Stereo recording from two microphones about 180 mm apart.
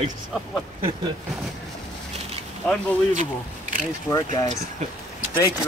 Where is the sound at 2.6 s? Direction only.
5° left (ahead or behind).